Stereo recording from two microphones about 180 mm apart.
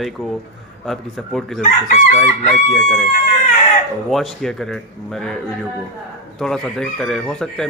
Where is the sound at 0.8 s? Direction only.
Centre (ahead or behind).